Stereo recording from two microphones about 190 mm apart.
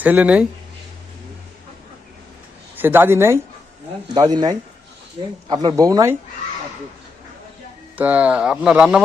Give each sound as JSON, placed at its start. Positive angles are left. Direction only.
{"t": 0.0, "sound": "speech", "side_deg": -10}
{"t": 2.7, "sound": "speech", "side_deg": -10}
{"t": 7.9, "sound": "speech", "side_deg": -10}